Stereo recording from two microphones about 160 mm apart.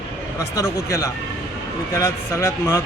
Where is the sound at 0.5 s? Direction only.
15° left (ahead or behind).